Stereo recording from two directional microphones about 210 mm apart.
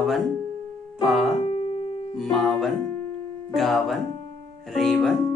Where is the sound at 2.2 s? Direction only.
Centre (ahead or behind).